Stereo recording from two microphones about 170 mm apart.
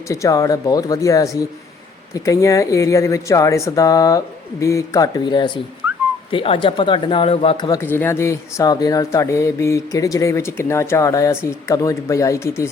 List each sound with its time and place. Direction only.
0.1 s speech: 20° left (ahead or behind)
7.8 s speech: 15° left (ahead or behind)